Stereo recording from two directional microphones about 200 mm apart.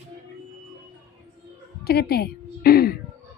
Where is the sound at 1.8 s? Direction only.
50° left (ahead or behind).